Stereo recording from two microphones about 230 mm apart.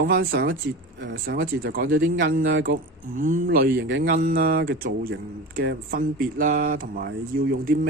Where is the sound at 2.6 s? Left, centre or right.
Right.